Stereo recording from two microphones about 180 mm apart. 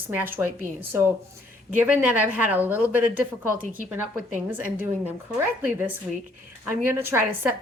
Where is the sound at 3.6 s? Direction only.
50° right (ahead or behind).